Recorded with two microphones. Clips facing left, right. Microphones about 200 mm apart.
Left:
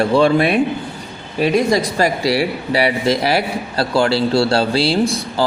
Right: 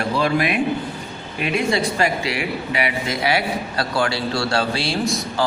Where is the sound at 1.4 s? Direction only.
40° left (ahead or behind).